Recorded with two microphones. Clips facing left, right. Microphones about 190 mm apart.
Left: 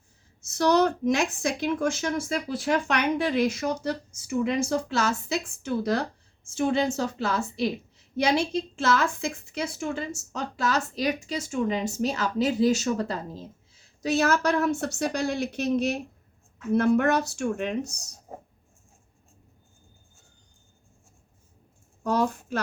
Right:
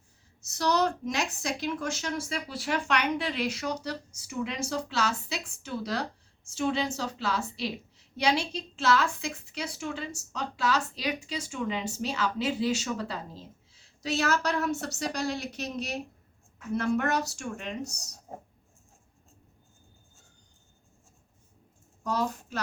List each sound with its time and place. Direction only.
0.4 s a woman's voice: 55° left (ahead or behind)
22.0 s a woman's voice: 50° left (ahead or behind)